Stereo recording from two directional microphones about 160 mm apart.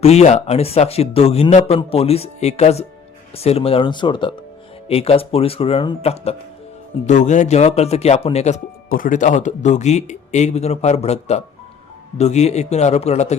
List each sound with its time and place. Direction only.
0.0 s a man's voice: 40° left (ahead or behind)
8.9 s speech: 55° left (ahead or behind)